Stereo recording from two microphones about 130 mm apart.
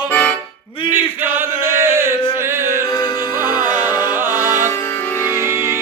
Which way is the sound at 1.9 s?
20° right (ahead or behind).